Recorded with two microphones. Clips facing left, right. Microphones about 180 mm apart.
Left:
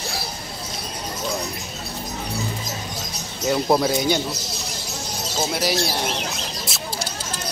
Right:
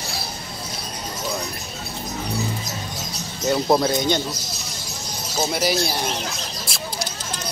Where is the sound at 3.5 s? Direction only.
Centre (ahead or behind).